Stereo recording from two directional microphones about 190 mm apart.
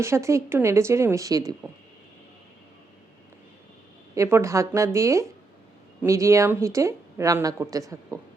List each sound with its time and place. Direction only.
0.0 s speech: 15° right (ahead or behind)
4.1 s speech: 15° right (ahead or behind)